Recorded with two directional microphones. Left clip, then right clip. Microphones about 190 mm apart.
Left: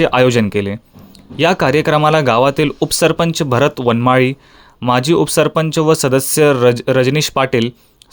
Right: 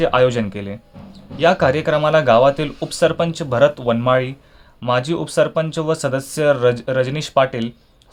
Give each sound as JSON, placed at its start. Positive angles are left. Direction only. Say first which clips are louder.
{"t": 0.0, "sound": "speech", "louder": "left 3 dB", "side_deg": 40}